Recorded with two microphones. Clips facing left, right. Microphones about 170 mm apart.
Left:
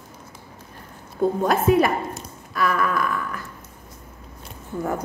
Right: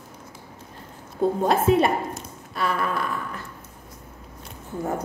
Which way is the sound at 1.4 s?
30° right (ahead or behind).